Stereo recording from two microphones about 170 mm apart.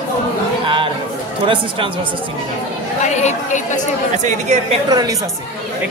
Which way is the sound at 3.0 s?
45° left (ahead or behind).